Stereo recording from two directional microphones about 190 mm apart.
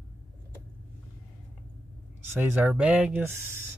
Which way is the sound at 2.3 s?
10° right (ahead or behind).